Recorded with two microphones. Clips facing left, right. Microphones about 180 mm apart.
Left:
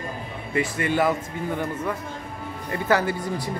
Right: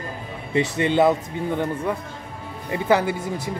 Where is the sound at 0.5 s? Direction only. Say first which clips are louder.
Right 4 dB; 20° right (ahead or behind).